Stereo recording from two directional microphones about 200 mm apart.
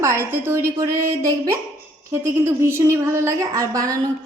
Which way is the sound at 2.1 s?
10° right (ahead or behind).